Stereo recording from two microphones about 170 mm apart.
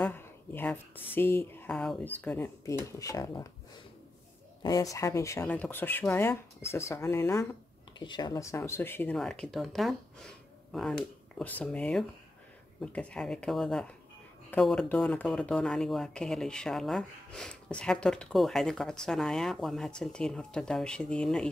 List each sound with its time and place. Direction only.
0.0 s speech: 10° left (ahead or behind)
4.6 s speech: 20° left (ahead or behind)